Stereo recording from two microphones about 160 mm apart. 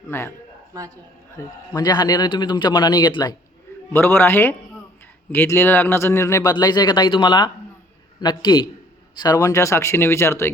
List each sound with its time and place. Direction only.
0.1 s speech: 15° left (ahead or behind)
1.7 s speech: 25° left (ahead or behind)
3.9 s speech: 15° left (ahead or behind)